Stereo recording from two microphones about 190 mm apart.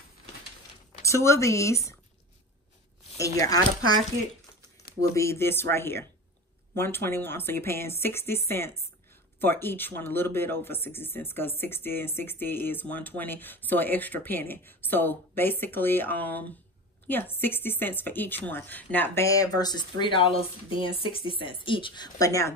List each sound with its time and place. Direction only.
1.0 s speech: 15° left (ahead or behind)
3.2 s speech: 20° left (ahead or behind)
5.1 s speech: 15° left (ahead or behind)